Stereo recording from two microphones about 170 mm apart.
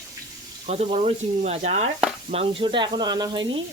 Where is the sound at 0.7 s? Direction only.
40° right (ahead or behind).